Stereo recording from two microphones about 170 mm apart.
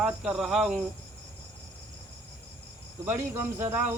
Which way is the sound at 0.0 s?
5° right (ahead or behind).